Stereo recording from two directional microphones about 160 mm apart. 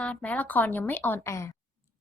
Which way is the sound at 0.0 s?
10° left (ahead or behind).